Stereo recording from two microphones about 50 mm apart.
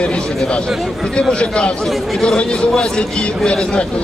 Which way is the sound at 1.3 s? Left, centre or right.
Left.